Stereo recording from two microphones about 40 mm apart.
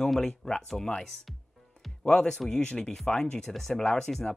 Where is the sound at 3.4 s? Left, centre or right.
Centre.